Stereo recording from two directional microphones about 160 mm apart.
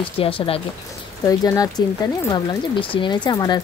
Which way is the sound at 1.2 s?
20° left (ahead or behind).